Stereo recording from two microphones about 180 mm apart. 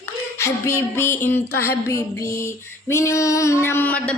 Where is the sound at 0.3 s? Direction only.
15° left (ahead or behind).